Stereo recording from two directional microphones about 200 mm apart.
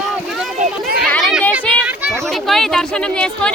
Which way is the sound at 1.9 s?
Centre (ahead or behind).